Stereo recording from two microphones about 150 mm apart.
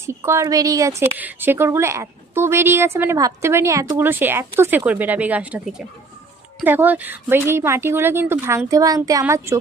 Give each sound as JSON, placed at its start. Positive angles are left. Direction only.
{"t": 0.0, "sound": "a woman's voice", "side_deg": -20}